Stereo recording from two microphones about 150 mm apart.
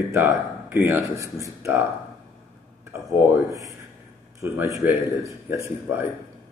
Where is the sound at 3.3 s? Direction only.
20° right (ahead or behind).